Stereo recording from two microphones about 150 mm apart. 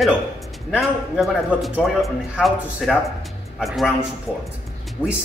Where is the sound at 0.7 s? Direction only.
Centre (ahead or behind).